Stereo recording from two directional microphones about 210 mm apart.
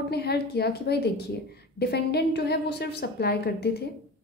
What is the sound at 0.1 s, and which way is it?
A woman's voice, 50° left (ahead or behind).